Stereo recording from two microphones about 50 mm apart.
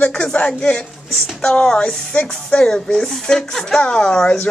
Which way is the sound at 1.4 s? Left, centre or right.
Centre.